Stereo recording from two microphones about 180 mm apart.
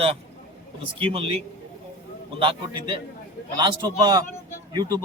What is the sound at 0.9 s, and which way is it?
Speech, 30° right (ahead or behind).